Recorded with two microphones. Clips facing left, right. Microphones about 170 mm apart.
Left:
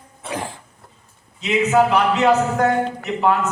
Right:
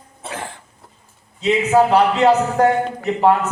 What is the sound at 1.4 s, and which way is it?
A man's voice, 30° right (ahead or behind).